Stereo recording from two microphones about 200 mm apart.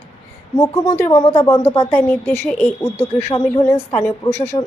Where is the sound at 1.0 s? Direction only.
20° left (ahead or behind).